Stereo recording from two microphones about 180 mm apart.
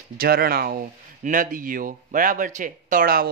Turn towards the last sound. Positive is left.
turn(degrees=-55)  # may be behind; listen again after turning